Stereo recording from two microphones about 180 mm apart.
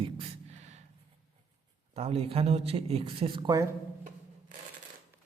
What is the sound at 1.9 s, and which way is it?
Speech, 35° right (ahead or behind).